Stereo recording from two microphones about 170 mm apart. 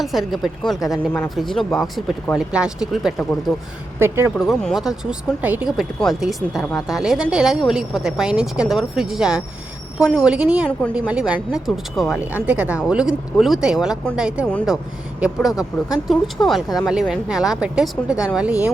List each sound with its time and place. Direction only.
0.0 s speech: centre (ahead or behind)
4.0 s speech: 15° right (ahead or behind)
4.4 s speech: centre (ahead or behind)
14.4 s speech: 10° left (ahead or behind)
15.2 s speech: centre (ahead or behind)